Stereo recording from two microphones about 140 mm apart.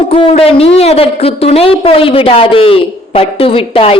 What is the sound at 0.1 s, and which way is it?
Speech, 45° left (ahead or behind).